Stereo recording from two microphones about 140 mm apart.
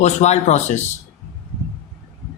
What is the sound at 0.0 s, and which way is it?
Speech, 55° left (ahead or behind).